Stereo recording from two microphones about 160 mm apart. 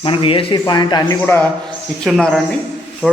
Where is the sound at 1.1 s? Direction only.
15° left (ahead or behind).